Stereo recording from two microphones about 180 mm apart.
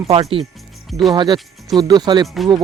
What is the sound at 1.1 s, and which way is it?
Speech, 25° right (ahead or behind).